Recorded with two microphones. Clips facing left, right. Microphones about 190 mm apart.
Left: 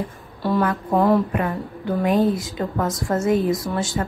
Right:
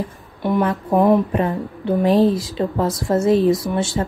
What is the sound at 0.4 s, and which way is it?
A woman's voice, 20° right (ahead or behind).